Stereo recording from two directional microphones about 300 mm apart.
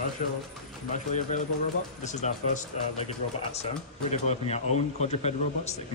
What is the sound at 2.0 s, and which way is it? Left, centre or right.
Speech, left.